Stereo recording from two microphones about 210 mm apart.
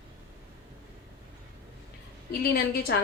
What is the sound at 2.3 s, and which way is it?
Speech, 45° left (ahead or behind).